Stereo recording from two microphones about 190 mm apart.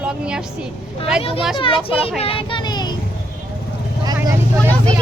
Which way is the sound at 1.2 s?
30° left (ahead or behind).